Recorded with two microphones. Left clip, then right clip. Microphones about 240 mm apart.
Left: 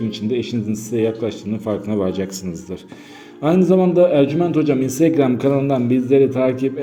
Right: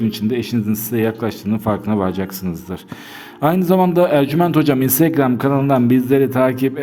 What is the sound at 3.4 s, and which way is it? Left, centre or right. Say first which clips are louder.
A man's voice: even; right.